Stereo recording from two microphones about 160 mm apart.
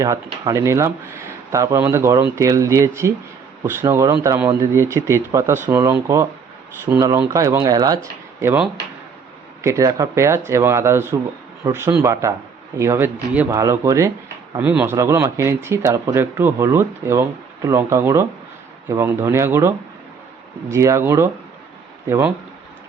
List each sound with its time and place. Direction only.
0.0 s speech: 20° right (ahead or behind)